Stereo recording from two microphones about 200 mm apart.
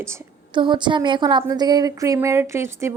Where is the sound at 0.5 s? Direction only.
25° right (ahead or behind).